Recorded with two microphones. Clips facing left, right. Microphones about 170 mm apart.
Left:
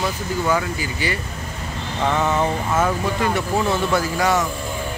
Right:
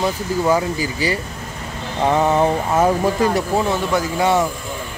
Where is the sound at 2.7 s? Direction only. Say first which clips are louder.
Right 4 dB; 35° right (ahead or behind).